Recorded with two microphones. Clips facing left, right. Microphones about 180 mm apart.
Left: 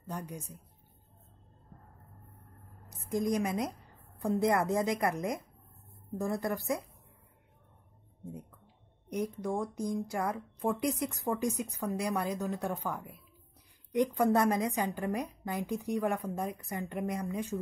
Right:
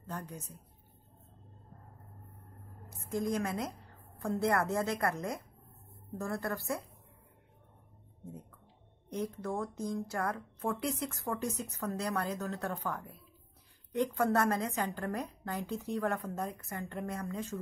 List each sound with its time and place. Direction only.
0.0 s a woman's voice: 10° left (ahead or behind)
3.1 s speech: 15° left (ahead or behind)
9.1 s speech: 15° left (ahead or behind)